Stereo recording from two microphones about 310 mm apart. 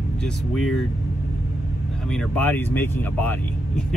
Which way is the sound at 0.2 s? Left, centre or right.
Centre.